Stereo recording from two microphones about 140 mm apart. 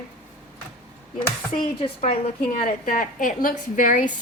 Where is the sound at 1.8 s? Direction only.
45° left (ahead or behind).